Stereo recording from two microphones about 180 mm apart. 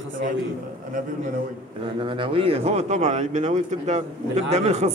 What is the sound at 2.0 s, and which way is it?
Speech, 30° right (ahead or behind).